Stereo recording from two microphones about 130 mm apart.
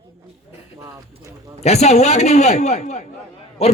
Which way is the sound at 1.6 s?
55° left (ahead or behind).